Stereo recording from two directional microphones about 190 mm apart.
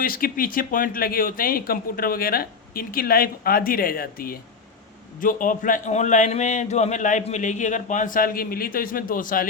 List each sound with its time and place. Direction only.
0.0 s a man's voice: 50° left (ahead or behind)